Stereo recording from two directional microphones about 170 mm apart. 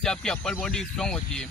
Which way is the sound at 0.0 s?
5° left (ahead or behind).